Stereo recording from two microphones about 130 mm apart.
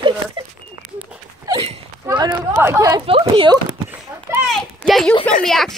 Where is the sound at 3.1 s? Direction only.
40° right (ahead or behind).